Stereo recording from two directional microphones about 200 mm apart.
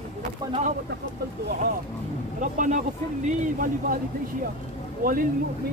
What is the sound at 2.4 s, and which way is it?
Speech, 40° right (ahead or behind).